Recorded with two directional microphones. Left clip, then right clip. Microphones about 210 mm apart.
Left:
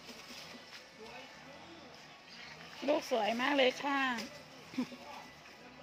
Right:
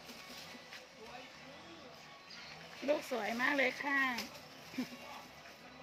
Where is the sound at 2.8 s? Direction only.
15° left (ahead or behind).